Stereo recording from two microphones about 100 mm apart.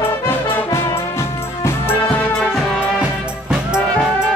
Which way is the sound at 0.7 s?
30° left (ahead or behind).